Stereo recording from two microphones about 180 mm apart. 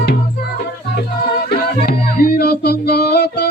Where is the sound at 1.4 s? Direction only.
60° left (ahead or behind).